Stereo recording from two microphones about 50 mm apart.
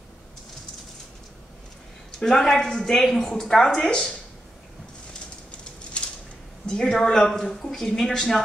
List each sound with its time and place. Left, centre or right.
2.1 s a woman's voice: centre
5.5 s a sound: left
6.6 s a woman's voice: centre